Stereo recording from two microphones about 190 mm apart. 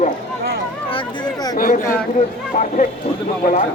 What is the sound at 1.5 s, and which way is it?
Speech, 45° left (ahead or behind).